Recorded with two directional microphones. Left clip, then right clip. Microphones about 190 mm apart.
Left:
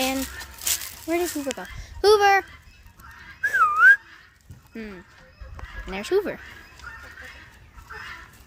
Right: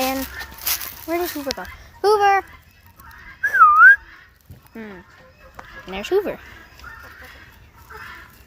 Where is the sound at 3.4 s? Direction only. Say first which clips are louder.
Right 7 dB; 25° left (ahead or behind).